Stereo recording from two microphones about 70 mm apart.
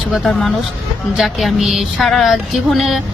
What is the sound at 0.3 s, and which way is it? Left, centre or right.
Speech, centre.